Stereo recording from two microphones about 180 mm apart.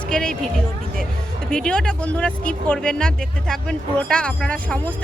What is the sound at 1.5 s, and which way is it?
Speech, 5° left (ahead or behind).